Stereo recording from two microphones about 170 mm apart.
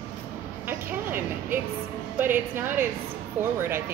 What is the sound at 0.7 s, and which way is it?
Music, 10° right (ahead or behind).